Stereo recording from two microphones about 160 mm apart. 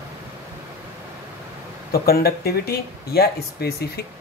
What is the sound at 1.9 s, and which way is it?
Speech, 70° left (ahead or behind).